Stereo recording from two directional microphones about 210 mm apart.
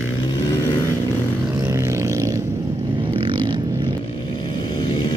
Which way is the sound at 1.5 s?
15° right (ahead or behind).